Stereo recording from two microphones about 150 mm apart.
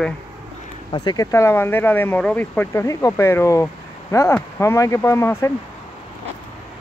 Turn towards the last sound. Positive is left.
turn(degrees=20)  # may be behind; listen again after turning